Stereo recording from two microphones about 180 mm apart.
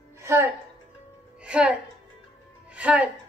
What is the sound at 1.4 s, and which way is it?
A woman's voice, 5° right (ahead or behind).